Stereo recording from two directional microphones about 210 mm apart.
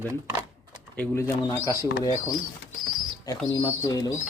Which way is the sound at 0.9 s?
10° left (ahead or behind).